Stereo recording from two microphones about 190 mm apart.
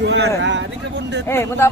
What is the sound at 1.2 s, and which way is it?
Speech, 15° left (ahead or behind).